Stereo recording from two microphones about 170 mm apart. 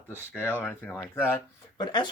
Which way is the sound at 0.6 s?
10° left (ahead or behind).